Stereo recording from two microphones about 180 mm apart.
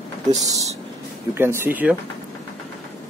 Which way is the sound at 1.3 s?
10° right (ahead or behind).